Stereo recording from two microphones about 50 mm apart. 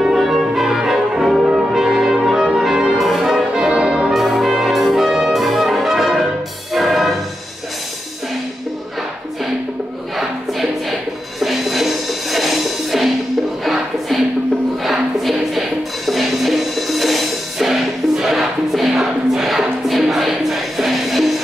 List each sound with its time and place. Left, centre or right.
0.0 s brass instrument: centre
1.4 s brass instrument: centre
3.5 s brass instrument: centre
4.1 s brass instrument: centre
6.7 s music: centre
10.1 s music: centre